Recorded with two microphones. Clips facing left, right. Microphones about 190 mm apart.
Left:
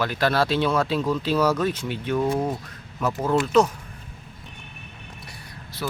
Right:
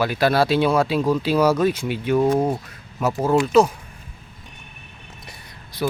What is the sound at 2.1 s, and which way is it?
Speech, 30° right (ahead or behind).